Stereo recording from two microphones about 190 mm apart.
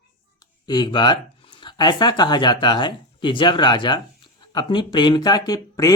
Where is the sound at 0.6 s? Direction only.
20° left (ahead or behind).